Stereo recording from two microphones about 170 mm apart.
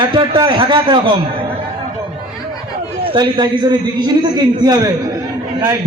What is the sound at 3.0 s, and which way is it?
A man's voice, 30° right (ahead or behind).